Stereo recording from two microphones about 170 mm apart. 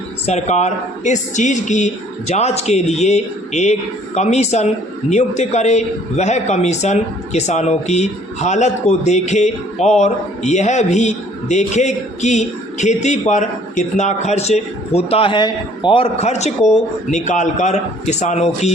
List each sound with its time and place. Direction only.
0.3 s speech: 40° left (ahead or behind)